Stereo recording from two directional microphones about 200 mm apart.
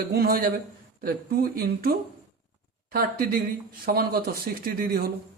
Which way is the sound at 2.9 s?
45° right (ahead or behind).